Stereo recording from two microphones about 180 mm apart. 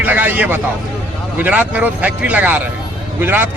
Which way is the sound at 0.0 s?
10° right (ahead or behind).